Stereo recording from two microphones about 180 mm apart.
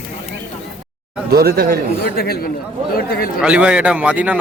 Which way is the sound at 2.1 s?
60° left (ahead or behind).